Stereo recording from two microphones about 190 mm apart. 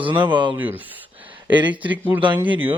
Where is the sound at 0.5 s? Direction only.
10° right (ahead or behind).